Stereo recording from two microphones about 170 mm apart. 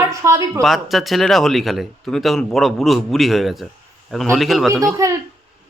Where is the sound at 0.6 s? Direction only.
Centre (ahead or behind).